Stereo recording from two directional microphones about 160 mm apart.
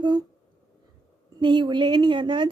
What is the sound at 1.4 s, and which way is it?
A woman's voice, 30° right (ahead or behind).